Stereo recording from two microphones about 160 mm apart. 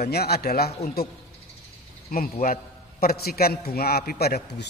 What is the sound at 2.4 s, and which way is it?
A man's voice, 70° left (ahead or behind).